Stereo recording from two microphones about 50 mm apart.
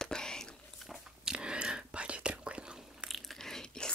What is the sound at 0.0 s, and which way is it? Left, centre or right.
Whispering, centre.